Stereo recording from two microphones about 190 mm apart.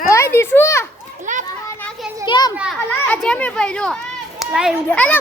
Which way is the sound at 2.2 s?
25° left (ahead or behind).